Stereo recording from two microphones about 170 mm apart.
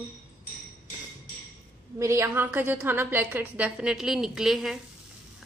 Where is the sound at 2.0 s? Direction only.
15° right (ahead or behind).